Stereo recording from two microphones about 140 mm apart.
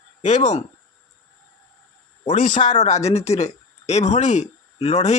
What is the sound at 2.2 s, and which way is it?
Speech, 65° left (ahead or behind).